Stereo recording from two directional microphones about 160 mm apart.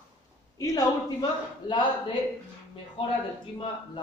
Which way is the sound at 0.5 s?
20° left (ahead or behind).